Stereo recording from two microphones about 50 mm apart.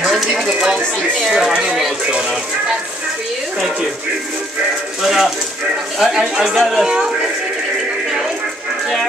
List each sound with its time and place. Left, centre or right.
1.2 s speech: centre
1.5 s speech: centre
5.0 s speech: centre